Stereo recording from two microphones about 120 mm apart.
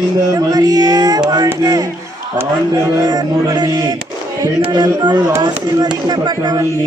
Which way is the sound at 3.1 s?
35° right (ahead or behind).